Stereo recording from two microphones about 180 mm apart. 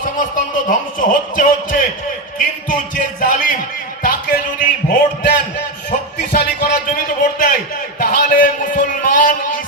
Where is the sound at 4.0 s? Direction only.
50° left (ahead or behind).